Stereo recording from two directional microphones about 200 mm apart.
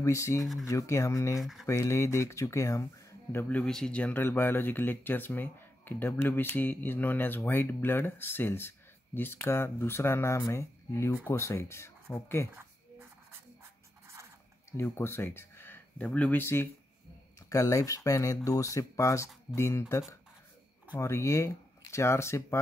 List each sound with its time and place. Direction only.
0.0 s speech: 15° left (ahead or behind)
1.4 s speech: centre (ahead or behind)
1.7 s speech: 15° left (ahead or behind)
14.7 s speech: 10° left (ahead or behind)